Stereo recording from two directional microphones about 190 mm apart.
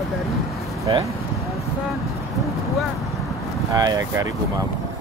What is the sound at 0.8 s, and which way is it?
Speech, 25° right (ahead or behind).